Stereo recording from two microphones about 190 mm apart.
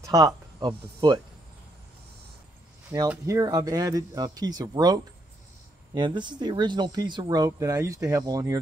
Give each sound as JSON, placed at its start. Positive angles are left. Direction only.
{"t": 0.6, "sound": "speech", "side_deg": -25}
{"t": 3.1, "sound": "speech", "side_deg": -15}